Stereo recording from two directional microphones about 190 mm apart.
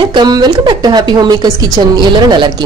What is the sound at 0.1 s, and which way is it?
A woman's voice, 20° right (ahead or behind).